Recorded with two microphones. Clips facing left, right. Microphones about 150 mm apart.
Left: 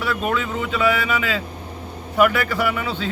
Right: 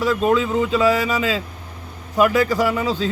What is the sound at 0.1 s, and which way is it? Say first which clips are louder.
A man's voice: right 5 dB; 30° right (ahead or behind).